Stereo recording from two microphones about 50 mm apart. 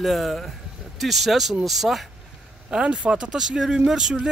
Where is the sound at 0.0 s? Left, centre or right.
Centre.